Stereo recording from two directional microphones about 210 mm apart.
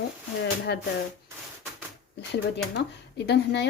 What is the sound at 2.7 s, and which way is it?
Speech, 55° left (ahead or behind).